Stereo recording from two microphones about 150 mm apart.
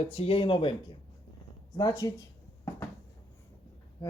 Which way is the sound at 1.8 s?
25° left (ahead or behind).